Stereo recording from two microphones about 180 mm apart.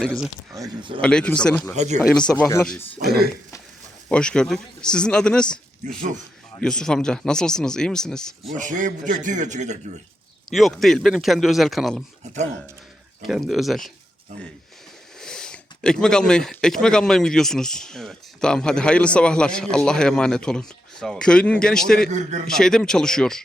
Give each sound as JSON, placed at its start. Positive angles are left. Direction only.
{"t": 0.0, "sound": "speech", "side_deg": 0}
{"t": 0.5, "sound": "speech", "side_deg": -20}
{"t": 1.0, "sound": "speech", "side_deg": 5}
{"t": 1.7, "sound": "a man's voice", "side_deg": -40}
{"t": 2.4, "sound": "speech", "side_deg": 15}
{"t": 4.1, "sound": "speech", "side_deg": 5}
{"t": 6.6, "sound": "speech", "side_deg": 5}
{"t": 8.5, "sound": "a man's voice", "side_deg": -45}
{"t": 10.5, "sound": "speech", "side_deg": 0}
{"t": 12.2, "sound": "speech", "side_deg": -40}
{"t": 13.2, "sound": "speech", "side_deg": 0}
{"t": 15.2, "sound": "speech", "side_deg": 5}
{"t": 22.1, "sound": "a man's voice", "side_deg": -40}
{"t": 22.4, "sound": "speech", "side_deg": 5}